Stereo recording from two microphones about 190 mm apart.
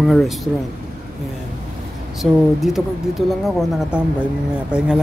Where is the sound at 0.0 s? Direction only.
Centre (ahead or behind).